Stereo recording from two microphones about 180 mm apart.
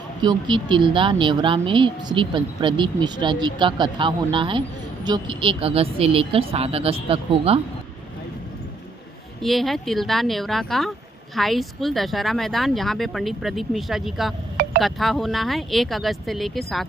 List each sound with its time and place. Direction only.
0.2 s a woman's voice: 25° right (ahead or behind)
9.4 s speech: centre (ahead or behind)